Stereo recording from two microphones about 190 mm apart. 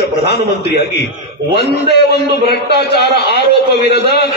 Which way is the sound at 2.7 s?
60° left (ahead or behind).